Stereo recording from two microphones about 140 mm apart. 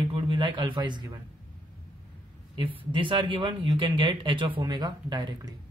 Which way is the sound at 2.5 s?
35° right (ahead or behind).